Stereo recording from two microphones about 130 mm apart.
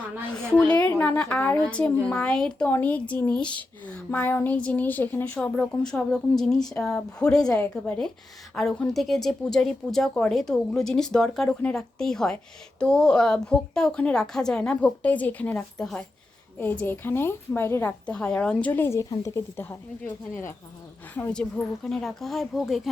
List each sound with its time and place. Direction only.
0.3 s speech: 5° left (ahead or behind)
16.6 s speech: 15° left (ahead or behind)
21.3 s speech: 5° left (ahead or behind)